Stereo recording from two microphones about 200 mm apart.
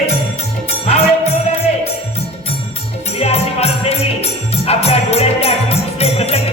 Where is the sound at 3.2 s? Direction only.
30° left (ahead or behind).